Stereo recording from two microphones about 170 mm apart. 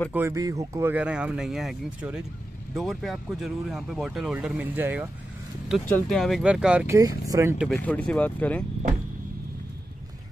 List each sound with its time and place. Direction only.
0.1 s speech: 15° right (ahead or behind)
6.0 s speech: centre (ahead or behind)
7.0 s speech: 20° right (ahead or behind)
7.5 s speech: centre (ahead or behind)